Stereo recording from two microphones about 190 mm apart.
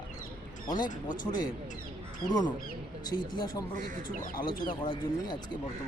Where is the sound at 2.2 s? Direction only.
20° left (ahead or behind).